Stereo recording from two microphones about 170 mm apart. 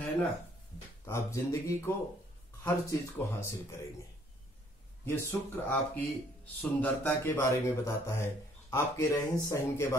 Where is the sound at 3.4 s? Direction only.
15° left (ahead or behind).